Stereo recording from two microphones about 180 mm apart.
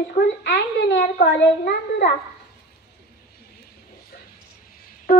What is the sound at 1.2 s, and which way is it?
Speech, 65° left (ahead or behind).